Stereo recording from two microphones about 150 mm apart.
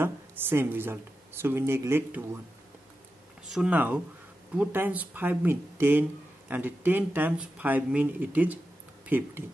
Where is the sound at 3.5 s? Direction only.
10° right (ahead or behind).